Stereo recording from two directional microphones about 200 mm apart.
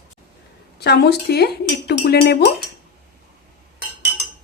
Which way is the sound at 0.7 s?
55° left (ahead or behind).